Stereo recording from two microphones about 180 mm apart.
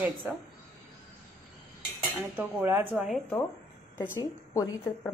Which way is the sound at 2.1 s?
10° right (ahead or behind).